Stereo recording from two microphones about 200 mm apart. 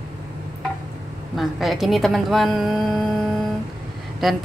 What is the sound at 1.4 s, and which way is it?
A woman's voice, centre (ahead or behind).